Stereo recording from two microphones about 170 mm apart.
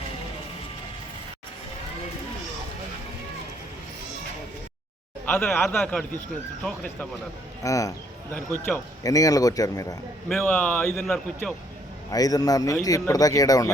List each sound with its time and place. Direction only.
5.2 s a man's voice: 5° left (ahead or behind)
7.6 s speech: 20° left (ahead or behind)
9.0 s speech: 20° left (ahead or behind)
10.2 s a man's voice: 5° left (ahead or behind)
12.1 s speech: 20° left (ahead or behind)